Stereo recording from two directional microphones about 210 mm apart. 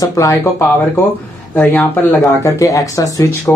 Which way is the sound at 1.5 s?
10° left (ahead or behind).